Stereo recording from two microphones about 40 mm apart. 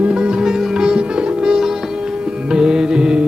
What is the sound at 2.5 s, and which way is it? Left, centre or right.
Music, centre.